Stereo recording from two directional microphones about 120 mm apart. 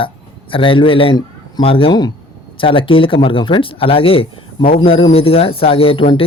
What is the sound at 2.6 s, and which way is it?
Speech, 45° left (ahead or behind).